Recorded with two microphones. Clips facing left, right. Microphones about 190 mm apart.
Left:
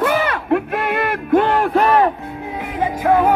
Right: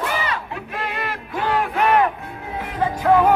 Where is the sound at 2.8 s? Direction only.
10° left (ahead or behind).